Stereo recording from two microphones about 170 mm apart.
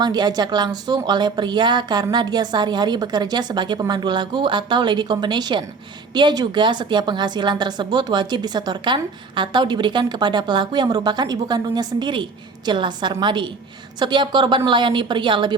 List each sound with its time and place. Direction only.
0.0 s a woman's voice: 25° right (ahead or behind)